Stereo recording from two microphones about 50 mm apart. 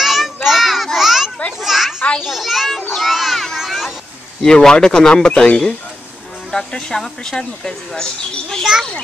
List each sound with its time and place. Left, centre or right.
0.0 s child singing: centre
0.9 s children playing: centre
1.6 s a sound: centre
2.2 s a child's voice: centre
2.9 s children playing: centre
3.5 s a sound: centre
4.4 s speech: centre